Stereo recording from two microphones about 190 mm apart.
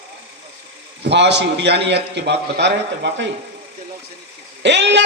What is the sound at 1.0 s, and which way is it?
A man's voice, 65° right (ahead or behind).